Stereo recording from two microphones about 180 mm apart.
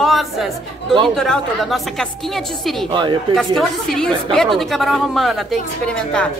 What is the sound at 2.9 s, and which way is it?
Speech, 25° right (ahead or behind).